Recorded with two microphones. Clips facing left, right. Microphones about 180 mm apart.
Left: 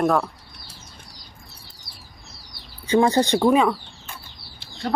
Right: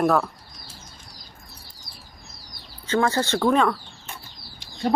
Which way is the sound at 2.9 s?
15° left (ahead or behind).